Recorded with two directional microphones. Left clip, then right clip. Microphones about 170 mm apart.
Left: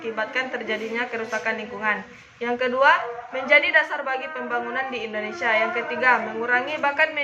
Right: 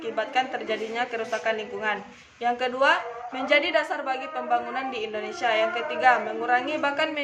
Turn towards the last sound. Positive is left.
turn(degrees=-40)  # may be behind; listen again after turning